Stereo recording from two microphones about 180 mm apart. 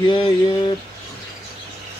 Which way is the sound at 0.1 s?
25° left (ahead or behind).